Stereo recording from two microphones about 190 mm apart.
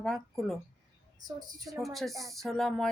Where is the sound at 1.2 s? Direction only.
20° right (ahead or behind).